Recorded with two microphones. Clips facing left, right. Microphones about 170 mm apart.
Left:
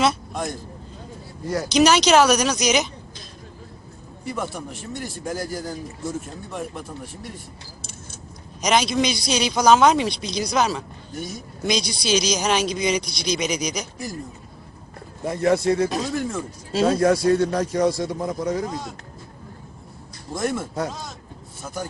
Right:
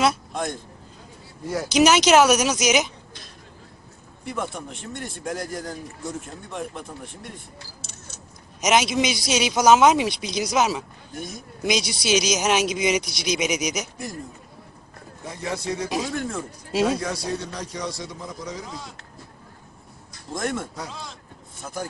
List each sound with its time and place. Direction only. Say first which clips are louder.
0.0 s vehicle: left 1 dB; centre (ahead or behind)
1.5 s a man's voice: left 1 dB; 5° right (ahead or behind)
4.3 s a man's voice: left 1 dB; centre (ahead or behind)
8.5 s a man's voice: even; 5° right (ahead or behind)
15.2 s a man's voice: left 10 dB; 55° left (ahead or behind)
16.2 s a man's voice: left 2 dB; centre (ahead or behind)
17.0 s a man's voice: left 11 dB; 55° left (ahead or behind)
20.3 s a man's voice: left 2 dB; 5° left (ahead or behind)